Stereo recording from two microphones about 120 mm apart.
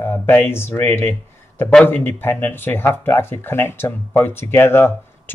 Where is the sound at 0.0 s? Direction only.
20° left (ahead or behind).